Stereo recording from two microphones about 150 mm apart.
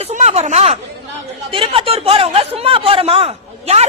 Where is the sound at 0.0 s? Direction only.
45° right (ahead or behind).